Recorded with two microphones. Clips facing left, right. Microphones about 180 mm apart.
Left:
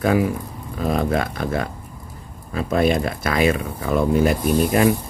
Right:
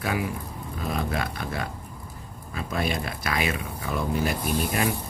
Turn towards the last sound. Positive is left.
turn(degrees=50)  # may be behind; listen again after turning